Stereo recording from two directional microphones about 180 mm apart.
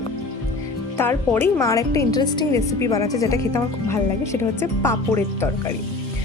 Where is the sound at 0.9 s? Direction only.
10° left (ahead or behind).